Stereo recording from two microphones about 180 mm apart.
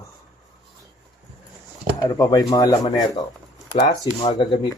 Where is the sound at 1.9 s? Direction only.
20° left (ahead or behind).